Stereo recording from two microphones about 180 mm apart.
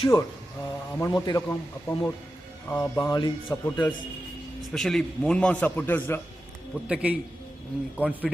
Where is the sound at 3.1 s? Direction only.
25° left (ahead or behind).